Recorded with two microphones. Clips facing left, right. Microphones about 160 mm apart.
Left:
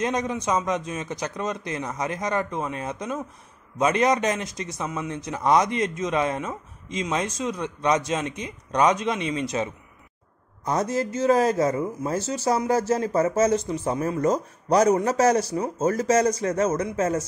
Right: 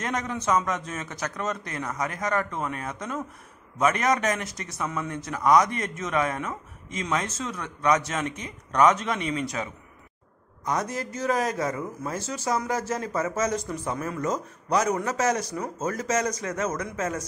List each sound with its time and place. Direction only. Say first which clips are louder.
0.0 s speech: left 4 dB; 20° left (ahead or behind)